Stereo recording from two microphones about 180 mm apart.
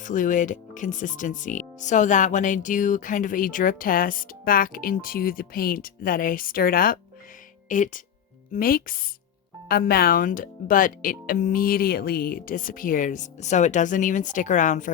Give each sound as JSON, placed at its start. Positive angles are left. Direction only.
{"t": 0.0, "sound": "speech", "side_deg": 45}